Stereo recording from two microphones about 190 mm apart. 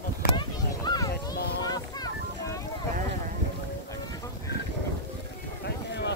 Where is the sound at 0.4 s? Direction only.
20° left (ahead or behind).